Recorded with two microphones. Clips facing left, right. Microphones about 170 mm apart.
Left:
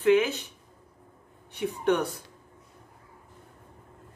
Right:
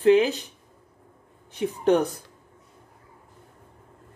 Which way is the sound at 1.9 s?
40° right (ahead or behind).